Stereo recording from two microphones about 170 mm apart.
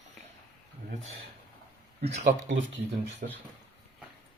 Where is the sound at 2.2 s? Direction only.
60° right (ahead or behind).